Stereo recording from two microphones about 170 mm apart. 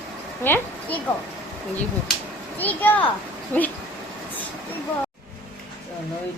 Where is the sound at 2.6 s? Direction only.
10° left (ahead or behind).